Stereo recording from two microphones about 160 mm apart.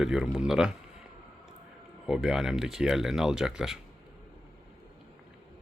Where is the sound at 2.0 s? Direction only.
5° right (ahead or behind).